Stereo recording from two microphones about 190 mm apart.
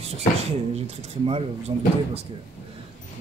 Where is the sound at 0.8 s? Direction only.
30° right (ahead or behind).